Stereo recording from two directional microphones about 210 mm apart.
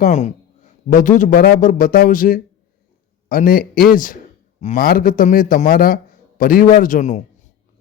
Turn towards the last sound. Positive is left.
turn(degrees=35)  # may be behind; listen again after turning